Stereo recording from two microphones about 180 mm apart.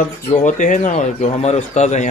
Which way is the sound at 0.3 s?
45° left (ahead or behind).